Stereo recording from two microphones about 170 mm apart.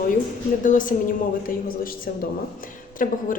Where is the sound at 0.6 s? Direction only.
50° left (ahead or behind).